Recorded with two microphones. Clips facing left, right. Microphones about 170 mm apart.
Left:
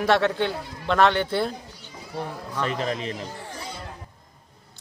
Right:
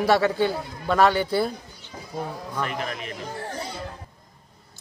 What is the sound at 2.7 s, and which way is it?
Speech, 30° left (ahead or behind).